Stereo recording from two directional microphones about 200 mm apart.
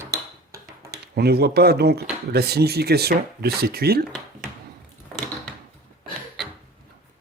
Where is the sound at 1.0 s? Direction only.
50° right (ahead or behind).